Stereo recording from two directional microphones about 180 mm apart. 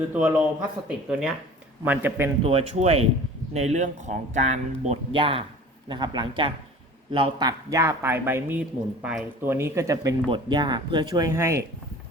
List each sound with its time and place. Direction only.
0.1 s speech: 10° right (ahead or behind)
2.4 s speech: 35° right (ahead or behind); by 11.6 s 15° right (ahead or behind)